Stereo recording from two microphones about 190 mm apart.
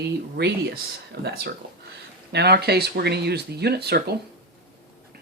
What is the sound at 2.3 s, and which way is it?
Speech, 60° right (ahead or behind).